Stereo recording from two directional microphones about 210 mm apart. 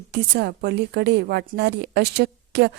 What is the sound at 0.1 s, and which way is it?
A woman's voice, 50° right (ahead or behind).